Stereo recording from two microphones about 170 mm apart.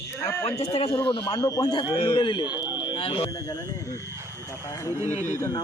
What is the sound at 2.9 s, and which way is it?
Speech, 30° left (ahead or behind).